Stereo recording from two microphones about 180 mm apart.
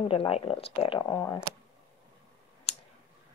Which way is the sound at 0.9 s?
20° left (ahead or behind).